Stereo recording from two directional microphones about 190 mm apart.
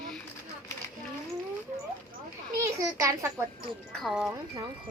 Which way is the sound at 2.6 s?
15° right (ahead or behind).